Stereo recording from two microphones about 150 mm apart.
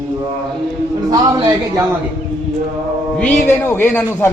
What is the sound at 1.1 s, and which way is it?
Speech, 20° right (ahead or behind).